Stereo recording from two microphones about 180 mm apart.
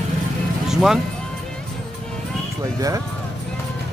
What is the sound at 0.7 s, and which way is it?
Speech, centre (ahead or behind).